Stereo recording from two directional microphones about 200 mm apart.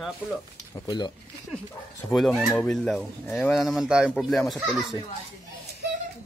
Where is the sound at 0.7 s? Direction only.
20° left (ahead or behind).